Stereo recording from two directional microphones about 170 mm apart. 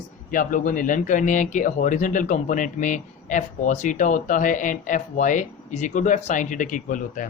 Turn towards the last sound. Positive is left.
turn(degrees=50)  # may be behind; listen again after turning